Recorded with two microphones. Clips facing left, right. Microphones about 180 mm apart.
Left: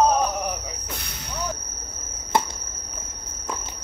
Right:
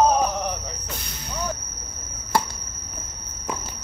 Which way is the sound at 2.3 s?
20° left (ahead or behind).